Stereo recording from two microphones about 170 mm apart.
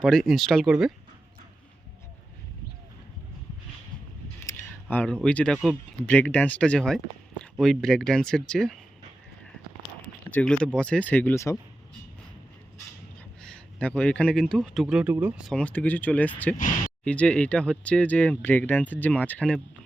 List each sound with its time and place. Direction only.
0.0 s speech: 5° left (ahead or behind)
4.9 s speech: 10° left (ahead or behind)
10.2 s speech: 5° left (ahead or behind)
13.4 s speech: 5° left (ahead or behind)
15.5 s speech: 5° left (ahead or behind)
16.6 s speech: 50° left (ahead or behind)
17.0 s speech: 5° left (ahead or behind)